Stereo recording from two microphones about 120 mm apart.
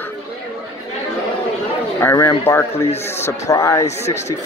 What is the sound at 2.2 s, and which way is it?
Speech, 20° left (ahead or behind).